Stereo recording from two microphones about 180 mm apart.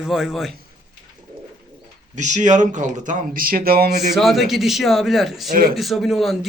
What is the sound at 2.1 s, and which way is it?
Speech, 40° right (ahead or behind).